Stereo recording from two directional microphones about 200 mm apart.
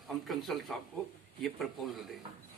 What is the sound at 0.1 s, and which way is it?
A man's voice, centre (ahead or behind).